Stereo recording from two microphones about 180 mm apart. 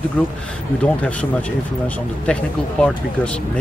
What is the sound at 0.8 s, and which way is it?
Speech, 5° left (ahead or behind).